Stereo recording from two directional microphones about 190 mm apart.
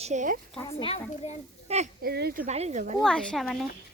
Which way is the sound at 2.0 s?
55° right (ahead or behind).